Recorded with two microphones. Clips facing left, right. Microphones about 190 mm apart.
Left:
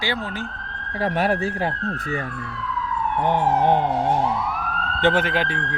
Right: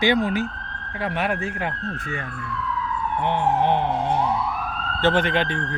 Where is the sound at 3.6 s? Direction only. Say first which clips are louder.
Left 3 dB; 45° left (ahead or behind).